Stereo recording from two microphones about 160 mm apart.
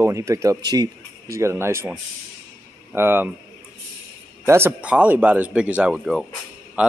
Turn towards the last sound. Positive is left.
turn(degrees=-5)  # may be behind; listen again after turning